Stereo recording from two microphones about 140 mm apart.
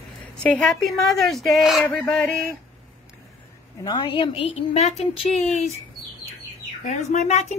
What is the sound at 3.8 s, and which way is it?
A woman's voice, 40° left (ahead or behind).